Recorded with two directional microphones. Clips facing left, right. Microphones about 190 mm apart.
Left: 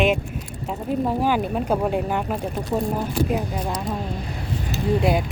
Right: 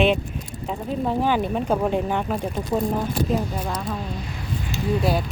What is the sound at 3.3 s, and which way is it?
Speech, 15° left (ahead or behind).